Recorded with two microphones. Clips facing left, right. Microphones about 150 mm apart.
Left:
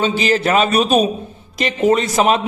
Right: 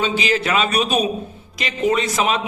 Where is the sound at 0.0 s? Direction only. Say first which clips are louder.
Left 4 dB; 40° left (ahead or behind).